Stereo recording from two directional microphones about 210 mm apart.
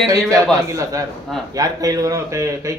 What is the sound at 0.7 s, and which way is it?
Speech, 15° right (ahead or behind).